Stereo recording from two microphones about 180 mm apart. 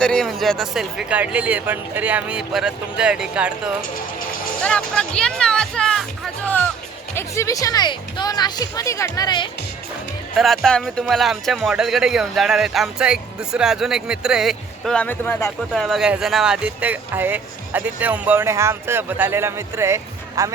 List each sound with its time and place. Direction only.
0.0 s speech: 5° left (ahead or behind)
4.6 s speech: 5° left (ahead or behind); by 9.5 s 25° left (ahead or behind)
10.3 s speech: centre (ahead or behind); by 20.5 s 15° right (ahead or behind)